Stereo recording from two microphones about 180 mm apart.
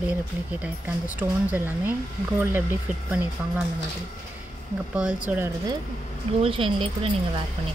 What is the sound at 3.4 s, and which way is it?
Speech, 10° right (ahead or behind).